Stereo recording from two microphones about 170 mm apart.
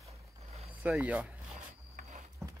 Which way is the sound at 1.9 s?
45° right (ahead or behind).